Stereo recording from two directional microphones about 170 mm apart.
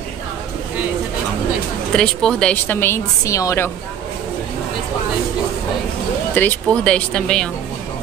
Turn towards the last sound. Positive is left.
turn(degrees=5)  # may be behind; listen again after turning